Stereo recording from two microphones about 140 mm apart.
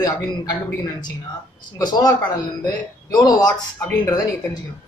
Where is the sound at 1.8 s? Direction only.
30° left (ahead or behind).